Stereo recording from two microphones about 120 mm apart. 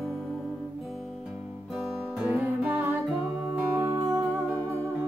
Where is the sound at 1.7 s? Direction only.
Centre (ahead or behind).